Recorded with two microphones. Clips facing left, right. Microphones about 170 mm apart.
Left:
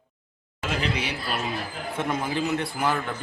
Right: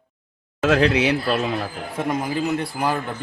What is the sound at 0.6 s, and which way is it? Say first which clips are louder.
Speech: right 11 dB; 85° right.